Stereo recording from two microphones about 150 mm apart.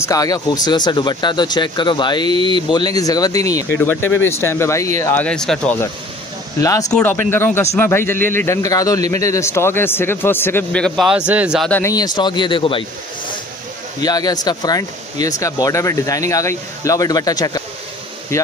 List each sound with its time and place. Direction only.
0.0 s speech: 25° left (ahead or behind); by 5.8 s 5° left (ahead or behind)
6.6 s speech: 20° left (ahead or behind)
6.9 s speech: 10° left (ahead or behind)
11.1 s a man's voice: 5° right (ahead or behind)
11.7 s speech: 20° left (ahead or behind)
14.0 s speech: 25° left (ahead or behind)